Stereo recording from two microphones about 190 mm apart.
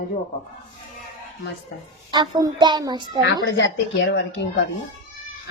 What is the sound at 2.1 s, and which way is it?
Speech, 20° right (ahead or behind).